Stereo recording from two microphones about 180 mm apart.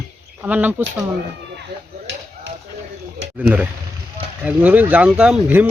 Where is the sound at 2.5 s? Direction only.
85° right.